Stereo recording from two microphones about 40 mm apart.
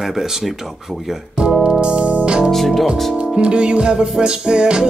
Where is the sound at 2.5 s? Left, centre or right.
Centre.